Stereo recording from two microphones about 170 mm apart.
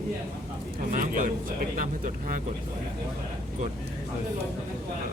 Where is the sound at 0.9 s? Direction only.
50° right (ahead or behind).